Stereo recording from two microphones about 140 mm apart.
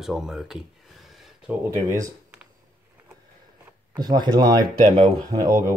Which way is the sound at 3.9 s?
30° right (ahead or behind).